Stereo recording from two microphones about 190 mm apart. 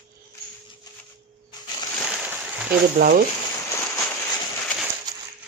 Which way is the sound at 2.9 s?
50° right (ahead or behind).